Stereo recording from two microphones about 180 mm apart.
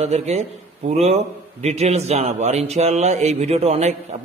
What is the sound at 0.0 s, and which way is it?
A man's voice, 40° right (ahead or behind).